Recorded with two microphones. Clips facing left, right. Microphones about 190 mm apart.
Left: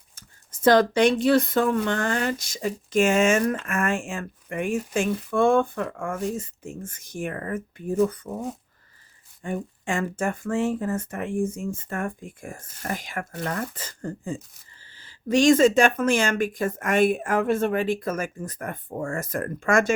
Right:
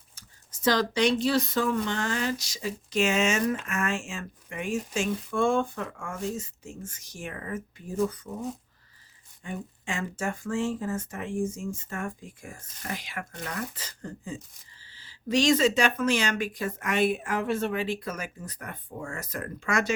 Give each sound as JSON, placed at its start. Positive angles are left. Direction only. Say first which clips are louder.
{"t": 0.2, "sound": "speech", "louder": "left 7 dB", "side_deg": 55}
{"t": 9.4, "sound": "speech", "louder": "left 7 dB", "side_deg": 50}